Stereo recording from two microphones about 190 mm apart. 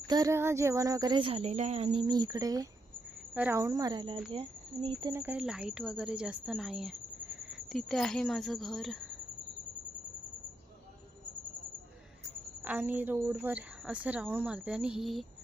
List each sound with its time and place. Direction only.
0.1 s a woman's voice: 15° right (ahead or behind)
5.1 s speech: 10° right (ahead or behind)
12.6 s a woman's voice: 10° right (ahead or behind)